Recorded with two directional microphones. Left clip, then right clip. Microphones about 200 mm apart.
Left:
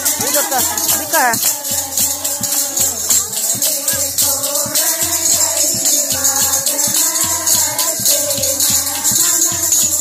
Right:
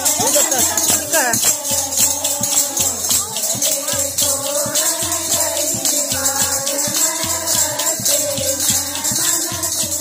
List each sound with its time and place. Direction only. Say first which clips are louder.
1.1 s music: left 5 dB; 30° left (ahead or behind)